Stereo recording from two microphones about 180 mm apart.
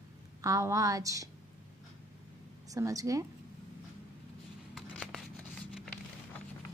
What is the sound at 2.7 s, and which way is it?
Speech, 20° right (ahead or behind).